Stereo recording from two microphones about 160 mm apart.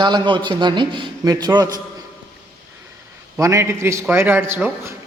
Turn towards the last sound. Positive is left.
turn(degrees=-15)  # may be behind; listen again after turning